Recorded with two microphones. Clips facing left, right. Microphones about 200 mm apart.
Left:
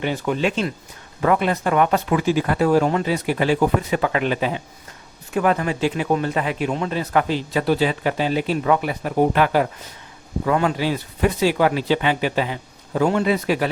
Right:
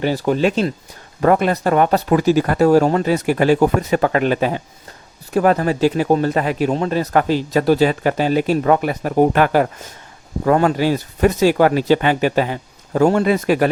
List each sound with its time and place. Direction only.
0.0 s speech: 35° right (ahead or behind)